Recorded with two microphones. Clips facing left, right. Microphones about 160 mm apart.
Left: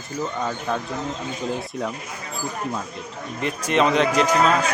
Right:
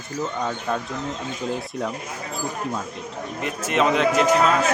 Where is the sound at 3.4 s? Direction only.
Centre (ahead or behind).